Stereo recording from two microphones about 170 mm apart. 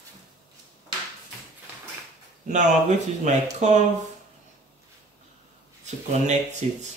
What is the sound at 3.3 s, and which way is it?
Speech, 45° right (ahead or behind).